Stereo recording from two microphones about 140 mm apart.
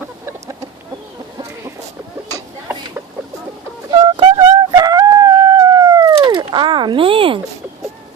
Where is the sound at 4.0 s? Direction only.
35° right (ahead or behind).